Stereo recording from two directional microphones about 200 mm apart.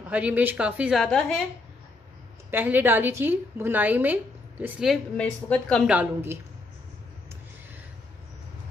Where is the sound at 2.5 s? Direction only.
10° right (ahead or behind).